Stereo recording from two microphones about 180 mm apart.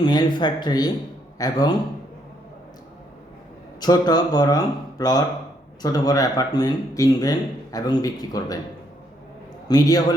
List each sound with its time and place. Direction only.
0.0 s speech: 25° left (ahead or behind)
3.8 s speech: 20° left (ahead or behind)
9.6 s speech: 20° left (ahead or behind)